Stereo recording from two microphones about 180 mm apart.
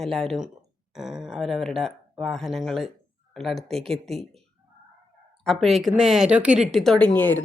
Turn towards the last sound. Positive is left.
turn(degrees=10)  # may be behind; listen again after turning